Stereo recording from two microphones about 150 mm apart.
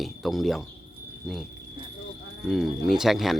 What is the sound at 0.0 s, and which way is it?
Speech, centre (ahead or behind).